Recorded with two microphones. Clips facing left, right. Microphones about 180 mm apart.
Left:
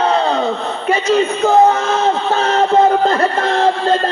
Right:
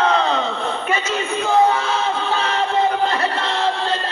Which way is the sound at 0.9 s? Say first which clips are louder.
Left 11 dB; 40° left (ahead or behind).